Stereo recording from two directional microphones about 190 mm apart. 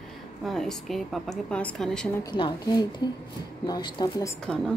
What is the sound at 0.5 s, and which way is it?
A woman's voice, centre (ahead or behind).